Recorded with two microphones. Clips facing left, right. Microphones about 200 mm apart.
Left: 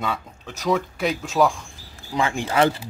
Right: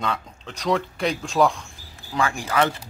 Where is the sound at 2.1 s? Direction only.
25° left (ahead or behind).